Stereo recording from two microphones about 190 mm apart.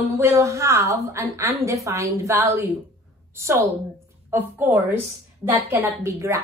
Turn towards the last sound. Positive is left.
turn(degrees=-15)  # may be behind; listen again after turning